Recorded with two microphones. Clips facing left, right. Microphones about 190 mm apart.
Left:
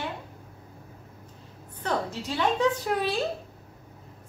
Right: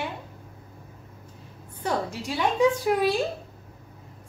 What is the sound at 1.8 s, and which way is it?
A woman's voice, 10° right (ahead or behind).